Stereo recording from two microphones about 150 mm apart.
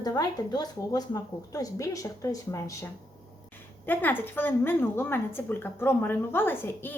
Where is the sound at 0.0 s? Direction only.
25° left (ahead or behind).